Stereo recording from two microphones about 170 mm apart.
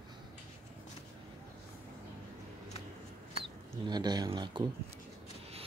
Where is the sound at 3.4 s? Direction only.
25° right (ahead or behind).